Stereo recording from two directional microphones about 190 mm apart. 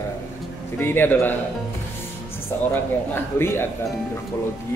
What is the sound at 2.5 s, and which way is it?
Speech, 10° left (ahead or behind).